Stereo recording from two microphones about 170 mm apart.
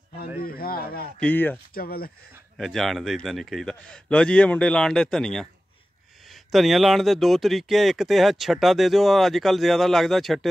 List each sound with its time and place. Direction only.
0.4 s speech: 60° left (ahead or behind)
1.2 s speech: 10° left (ahead or behind)
1.7 s speech: 60° left (ahead or behind)
2.5 s speech: centre (ahead or behind)